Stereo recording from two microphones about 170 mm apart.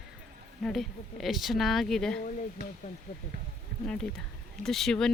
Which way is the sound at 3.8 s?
5° left (ahead or behind).